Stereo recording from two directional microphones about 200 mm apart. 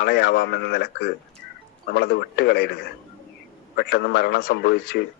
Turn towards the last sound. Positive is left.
turn(degrees=55)  # may be behind; listen again after turning